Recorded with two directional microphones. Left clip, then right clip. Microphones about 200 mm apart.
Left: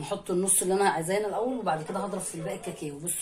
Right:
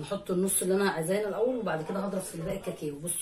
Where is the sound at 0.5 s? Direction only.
40° left (ahead or behind).